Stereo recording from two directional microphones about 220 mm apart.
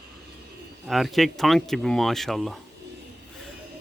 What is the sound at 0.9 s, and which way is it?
Speech, centre (ahead or behind).